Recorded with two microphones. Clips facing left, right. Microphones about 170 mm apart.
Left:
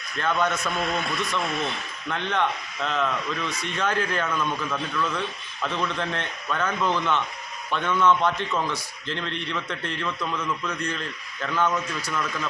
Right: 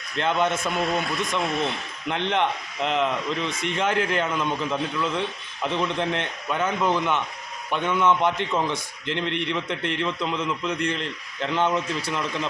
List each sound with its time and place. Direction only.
0.2 s a man's voice: 25° right (ahead or behind)